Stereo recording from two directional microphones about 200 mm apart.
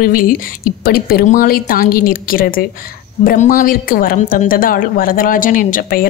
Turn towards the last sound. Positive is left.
turn(degrees=45)  # may be behind; listen again after turning